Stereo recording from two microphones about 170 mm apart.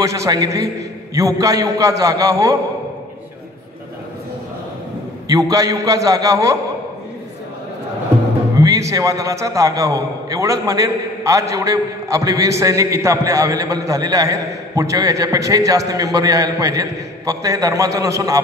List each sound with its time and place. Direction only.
0.0 s a man's voice: 20° right (ahead or behind)
5.3 s a man's voice: 20° right (ahead or behind)
8.5 s a man's voice: 20° right (ahead or behind)